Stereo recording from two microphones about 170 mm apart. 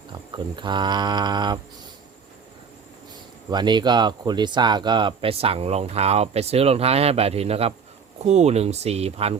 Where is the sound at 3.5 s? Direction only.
25° right (ahead or behind).